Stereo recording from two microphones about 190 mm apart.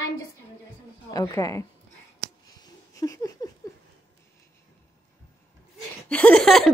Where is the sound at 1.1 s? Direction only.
20° left (ahead or behind).